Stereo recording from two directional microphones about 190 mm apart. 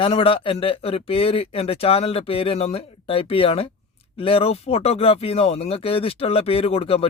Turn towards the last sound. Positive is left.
turn(degrees=30)  # may be behind; listen again after turning